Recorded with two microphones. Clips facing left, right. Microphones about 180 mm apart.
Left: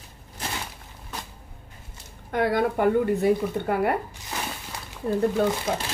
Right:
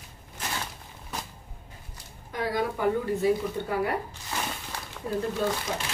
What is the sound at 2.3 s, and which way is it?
Speech, 60° left (ahead or behind).